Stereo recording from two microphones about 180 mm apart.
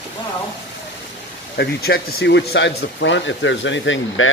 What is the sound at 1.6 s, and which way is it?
Speech, 65° left (ahead or behind).